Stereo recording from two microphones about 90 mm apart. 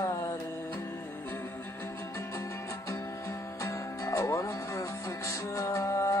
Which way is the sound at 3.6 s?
35° left (ahead or behind).